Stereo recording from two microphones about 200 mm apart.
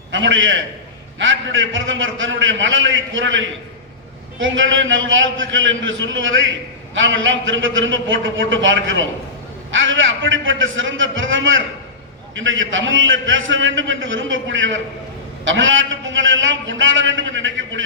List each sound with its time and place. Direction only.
0.1 s a man's voice: 70° right (ahead or behind)